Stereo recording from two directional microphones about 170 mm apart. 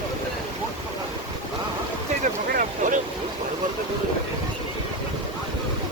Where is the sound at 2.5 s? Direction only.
55° right (ahead or behind).